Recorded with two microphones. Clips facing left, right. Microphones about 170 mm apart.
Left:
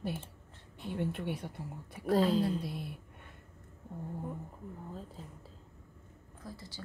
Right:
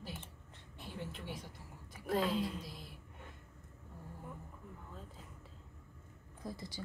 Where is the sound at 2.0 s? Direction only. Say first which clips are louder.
Left 6 dB; 35° left (ahead or behind).